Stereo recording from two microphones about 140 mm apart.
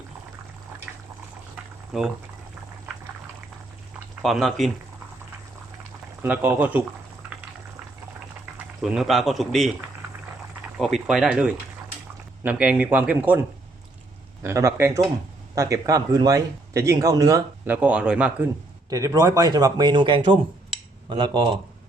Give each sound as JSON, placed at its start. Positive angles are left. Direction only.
{"t": 0.9, "sound": "water", "side_deg": -5}
{"t": 1.9, "sound": "speech", "side_deg": -5}
{"t": 4.2, "sound": "speech", "side_deg": 0}
{"t": 6.2, "sound": "speech", "side_deg": -10}
{"t": 8.5, "sound": "speech", "side_deg": -5}
{"t": 10.8, "sound": "speech", "side_deg": 0}
{"t": 14.4, "sound": "speech", "side_deg": -20}
{"t": 17.7, "sound": "speech", "side_deg": -10}
{"t": 18.9, "sound": "speech", "side_deg": -25}